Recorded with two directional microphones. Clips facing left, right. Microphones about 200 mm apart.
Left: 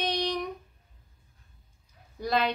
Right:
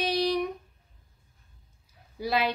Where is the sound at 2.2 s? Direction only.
5° right (ahead or behind).